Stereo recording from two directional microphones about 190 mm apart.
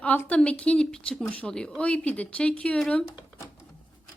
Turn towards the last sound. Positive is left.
turn(degrees=5)  # may be behind; listen again after turning